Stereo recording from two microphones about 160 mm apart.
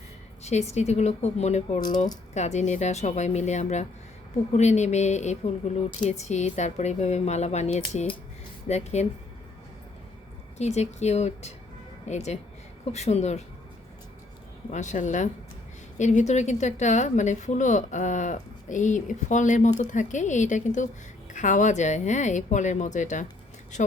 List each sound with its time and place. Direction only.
0.4 s a woman's voice: 45° left (ahead or behind)
10.6 s a woman's voice: 45° left (ahead or behind)
14.7 s a woman's voice: 50° left (ahead or behind)